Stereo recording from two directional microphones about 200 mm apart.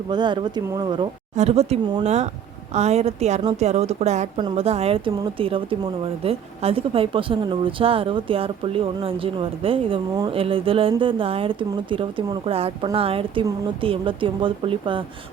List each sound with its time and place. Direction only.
0.1 s a woman's voice: 20° right (ahead or behind)